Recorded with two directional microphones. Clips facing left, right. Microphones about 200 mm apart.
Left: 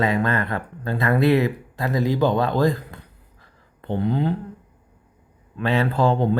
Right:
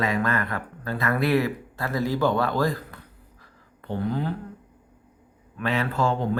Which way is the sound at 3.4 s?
25° left (ahead or behind).